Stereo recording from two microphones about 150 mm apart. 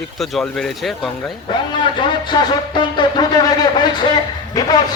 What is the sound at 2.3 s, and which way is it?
A man's voice, 30° left (ahead or behind).